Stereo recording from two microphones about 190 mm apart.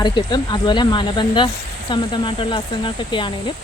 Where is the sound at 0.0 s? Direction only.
20° left (ahead or behind).